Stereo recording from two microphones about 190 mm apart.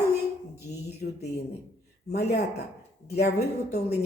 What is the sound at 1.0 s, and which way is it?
Speech, 50° left (ahead or behind).